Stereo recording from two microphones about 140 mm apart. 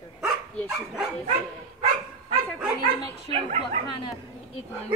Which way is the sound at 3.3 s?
45° right (ahead or behind).